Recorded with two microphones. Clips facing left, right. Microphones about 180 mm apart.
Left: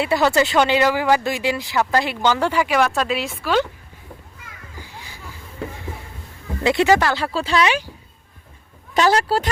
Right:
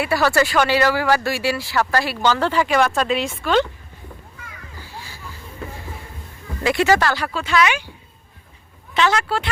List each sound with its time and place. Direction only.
0.0 s speech: 20° left (ahead or behind)
4.8 s a sound: 20° left (ahead or behind)
6.6 s speech: 20° left (ahead or behind)
9.0 s speech: 35° left (ahead or behind)